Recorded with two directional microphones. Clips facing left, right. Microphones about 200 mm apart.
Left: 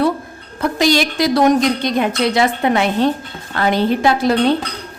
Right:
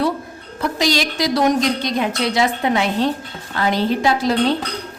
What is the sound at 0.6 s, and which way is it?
A woman's voice, 55° left (ahead or behind).